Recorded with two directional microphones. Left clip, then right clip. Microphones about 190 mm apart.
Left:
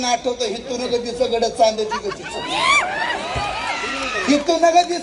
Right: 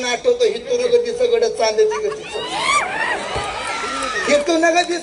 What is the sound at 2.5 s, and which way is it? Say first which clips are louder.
Speech: left 2 dB; 30° left (ahead or behind).